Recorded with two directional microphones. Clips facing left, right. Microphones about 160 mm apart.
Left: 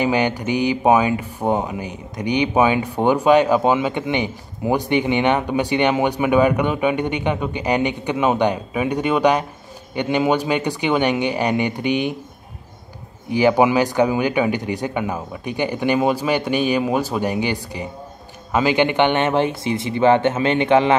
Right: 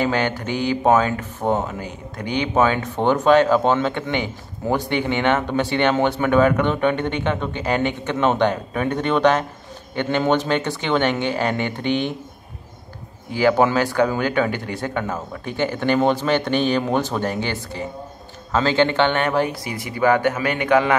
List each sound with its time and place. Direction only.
0.0 s speech: 15° left (ahead or behind)
13.3 s speech: 15° left (ahead or behind)